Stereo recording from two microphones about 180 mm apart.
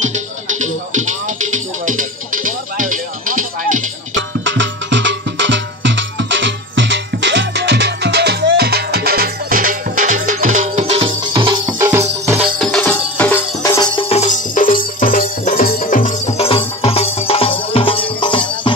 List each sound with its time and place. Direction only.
0.0 s music: 40° right (ahead or behind)
4.1 s music: 90° right; by 12.4 s 15° right (ahead or behind)
12.5 s music: 5° left (ahead or behind); by 18.4 s 30° left (ahead or behind)